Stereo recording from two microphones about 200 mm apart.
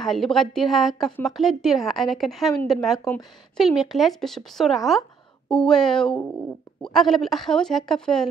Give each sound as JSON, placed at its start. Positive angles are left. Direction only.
{"t": 0.0, "sound": "a woman's voice", "side_deg": 0}